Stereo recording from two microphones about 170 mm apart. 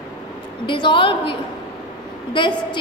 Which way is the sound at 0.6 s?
30° left (ahead or behind).